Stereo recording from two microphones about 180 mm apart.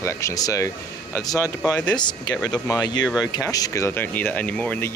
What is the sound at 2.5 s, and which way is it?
Speech, 20° left (ahead or behind).